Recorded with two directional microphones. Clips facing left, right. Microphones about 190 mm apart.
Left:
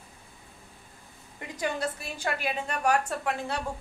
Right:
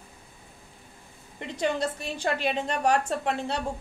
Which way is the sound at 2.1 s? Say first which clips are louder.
Right 6 dB; 30° right (ahead or behind).